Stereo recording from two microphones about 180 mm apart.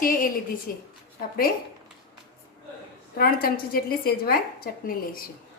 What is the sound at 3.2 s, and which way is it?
A woman's voice, 55° left (ahead or behind).